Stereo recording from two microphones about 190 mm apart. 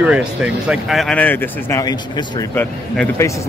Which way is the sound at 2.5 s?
10° left (ahead or behind).